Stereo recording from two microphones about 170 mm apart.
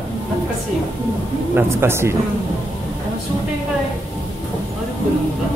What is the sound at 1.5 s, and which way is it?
Speech, 15° right (ahead or behind).